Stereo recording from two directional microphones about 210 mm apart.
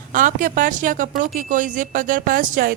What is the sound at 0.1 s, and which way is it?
Speech, 40° right (ahead or behind).